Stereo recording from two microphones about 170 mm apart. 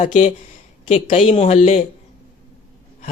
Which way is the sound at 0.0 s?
45° left (ahead or behind).